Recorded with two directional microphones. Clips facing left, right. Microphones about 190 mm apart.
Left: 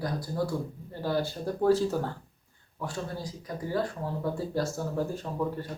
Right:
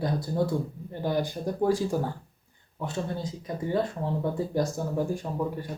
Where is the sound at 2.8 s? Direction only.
25° right (ahead or behind).